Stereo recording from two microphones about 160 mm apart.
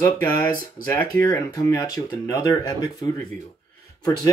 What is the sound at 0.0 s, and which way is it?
Speech, 15° left (ahead or behind).